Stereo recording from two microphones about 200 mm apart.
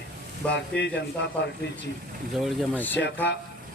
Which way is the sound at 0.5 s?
60° left (ahead or behind).